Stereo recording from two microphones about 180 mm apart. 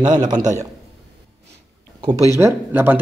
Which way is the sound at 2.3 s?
15° right (ahead or behind).